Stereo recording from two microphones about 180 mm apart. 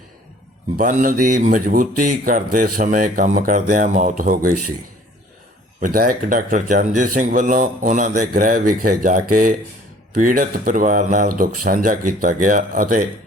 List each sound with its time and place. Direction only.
0.8 s speech: 50° right (ahead or behind)
5.8 s speech: 50° right (ahead or behind)